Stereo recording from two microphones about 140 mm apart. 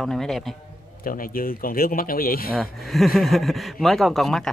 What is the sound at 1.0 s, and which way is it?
Speech, 90° left.